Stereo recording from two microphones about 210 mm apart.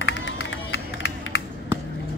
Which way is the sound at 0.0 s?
60° left (ahead or behind).